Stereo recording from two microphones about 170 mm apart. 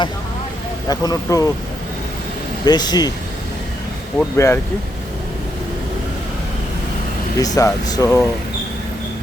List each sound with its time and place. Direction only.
0.9 s speech: 20° left (ahead or behind)
2.6 s speech: 25° left (ahead or behind)
4.4 s speech: 15° left (ahead or behind)
7.3 s speech: 20° left (ahead or behind)